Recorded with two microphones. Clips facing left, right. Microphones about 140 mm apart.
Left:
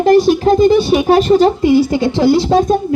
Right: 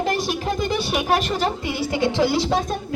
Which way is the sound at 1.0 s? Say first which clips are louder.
Left 12 dB; 30° left (ahead or behind).